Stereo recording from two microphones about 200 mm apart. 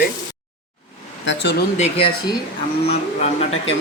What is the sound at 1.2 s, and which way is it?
Speech, 60° left (ahead or behind).